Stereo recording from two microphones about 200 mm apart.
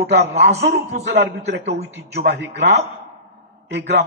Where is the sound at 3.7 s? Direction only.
60° right (ahead or behind).